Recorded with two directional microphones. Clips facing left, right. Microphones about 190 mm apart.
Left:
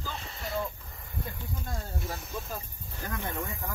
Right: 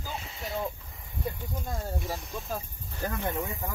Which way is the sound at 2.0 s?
Centre (ahead or behind).